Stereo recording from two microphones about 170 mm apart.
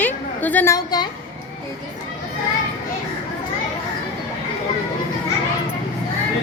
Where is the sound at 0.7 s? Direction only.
25° left (ahead or behind).